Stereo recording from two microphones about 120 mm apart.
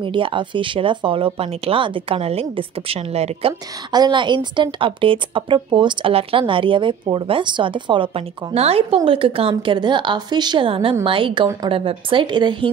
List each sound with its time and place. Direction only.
0.0 s a woman's voice: 45° right (ahead or behind); by 3.5 s 60° right (ahead or behind)
3.9 s a woman's voice: 40° right (ahead or behind)